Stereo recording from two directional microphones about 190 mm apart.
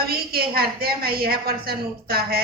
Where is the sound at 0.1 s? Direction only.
55° right (ahead or behind).